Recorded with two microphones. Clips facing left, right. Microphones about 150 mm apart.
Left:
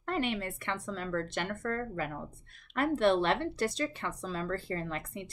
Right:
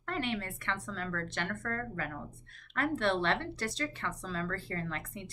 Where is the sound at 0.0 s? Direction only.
15° left (ahead or behind).